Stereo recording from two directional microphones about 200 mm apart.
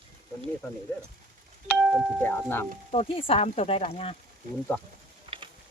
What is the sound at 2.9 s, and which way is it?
Speech, 30° left (ahead or behind).